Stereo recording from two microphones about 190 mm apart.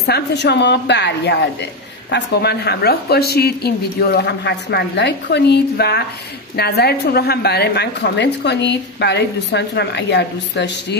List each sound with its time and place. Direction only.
0.0 s a woman's voice: 60° left (ahead or behind)